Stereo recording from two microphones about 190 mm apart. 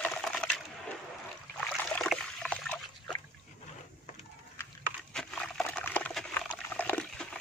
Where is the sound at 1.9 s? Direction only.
5° left (ahead or behind).